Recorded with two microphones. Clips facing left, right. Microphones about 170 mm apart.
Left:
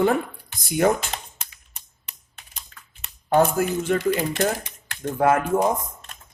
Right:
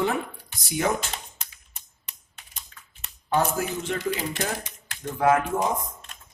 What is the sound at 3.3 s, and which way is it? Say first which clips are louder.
Speech: left 5 dB; 50° left (ahead or behind).